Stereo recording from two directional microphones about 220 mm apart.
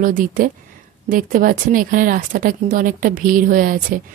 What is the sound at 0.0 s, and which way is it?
Speech, 35° right (ahead or behind).